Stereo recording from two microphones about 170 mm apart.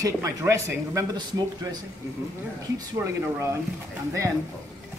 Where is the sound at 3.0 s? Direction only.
15° right (ahead or behind).